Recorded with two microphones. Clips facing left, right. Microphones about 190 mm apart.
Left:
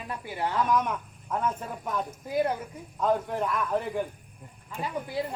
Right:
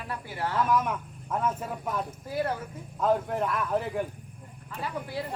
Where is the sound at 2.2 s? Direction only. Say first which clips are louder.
Left 4 dB; 15° left (ahead or behind).